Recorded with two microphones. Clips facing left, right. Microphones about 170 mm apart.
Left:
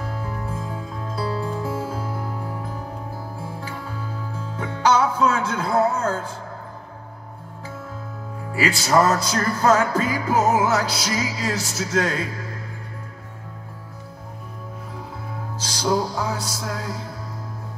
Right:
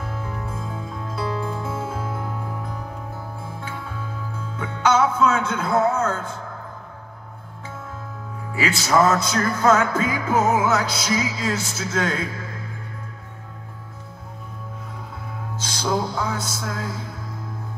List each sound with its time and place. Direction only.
0.0 s music: 35° left (ahead or behind)
3.6 s music: 35° left (ahead or behind)
8.5 s music: 35° left (ahead or behind)
15.5 s music: 35° left (ahead or behind)